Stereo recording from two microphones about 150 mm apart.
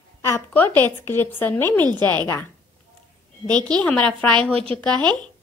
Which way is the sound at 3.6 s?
5° left (ahead or behind).